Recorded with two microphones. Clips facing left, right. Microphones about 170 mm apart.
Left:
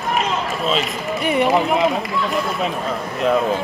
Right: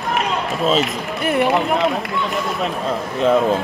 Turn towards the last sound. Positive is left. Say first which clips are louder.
# right 2 dB
turn(degrees=0)  # may be behind; listen again after turning